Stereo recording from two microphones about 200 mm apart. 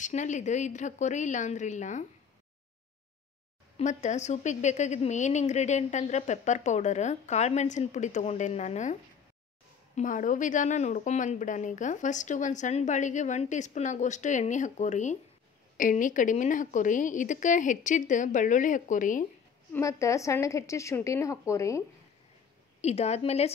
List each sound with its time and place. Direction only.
0.0 s a woman's voice: 35° left (ahead or behind)
3.7 s a woman's voice: 35° left (ahead or behind)
9.9 s a woman's voice: 40° left (ahead or behind)
19.7 s a woman's voice: 15° left (ahead or behind)
22.8 s a woman's voice: 35° left (ahead or behind)